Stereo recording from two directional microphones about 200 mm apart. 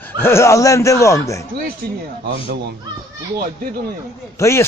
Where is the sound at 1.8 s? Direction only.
50° right (ahead or behind).